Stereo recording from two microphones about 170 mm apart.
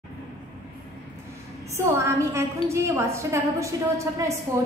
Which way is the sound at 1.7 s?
15° right (ahead or behind).